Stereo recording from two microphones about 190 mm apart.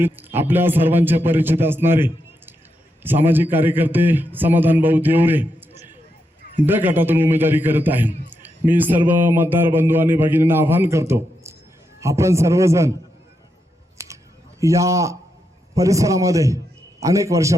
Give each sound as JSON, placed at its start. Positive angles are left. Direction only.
{"t": 0.3, "sound": "a man's voice", "side_deg": -10}
{"t": 6.7, "sound": "a man's voice", "side_deg": -10}
{"t": 14.0, "sound": "scissors", "side_deg": -15}
{"t": 14.6, "sound": "a man's voice", "side_deg": -15}